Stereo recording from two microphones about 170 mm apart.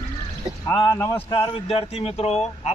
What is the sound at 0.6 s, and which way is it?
Speech, 20° left (ahead or behind).